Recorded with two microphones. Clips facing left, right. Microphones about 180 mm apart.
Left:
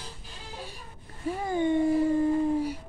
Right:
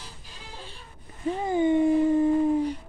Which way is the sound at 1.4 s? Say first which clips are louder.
Right 3 dB; 20° right (ahead or behind).